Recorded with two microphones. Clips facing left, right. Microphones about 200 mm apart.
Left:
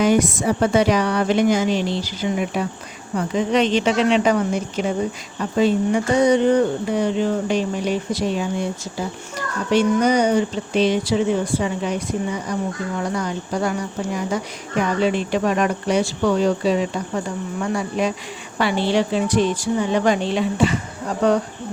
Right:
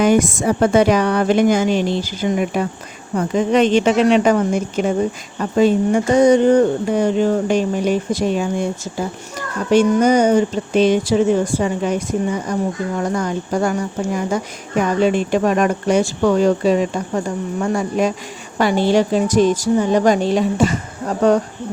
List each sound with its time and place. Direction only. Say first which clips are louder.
0.0 s speech: right 3 dB; 50° right (ahead or behind)
9.6 s speech: right 4 dB; 45° right (ahead or behind)
14.8 s speech: right 4 dB; 45° right (ahead or behind)